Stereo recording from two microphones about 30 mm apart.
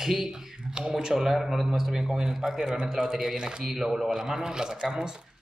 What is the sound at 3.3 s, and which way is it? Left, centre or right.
Speech, right.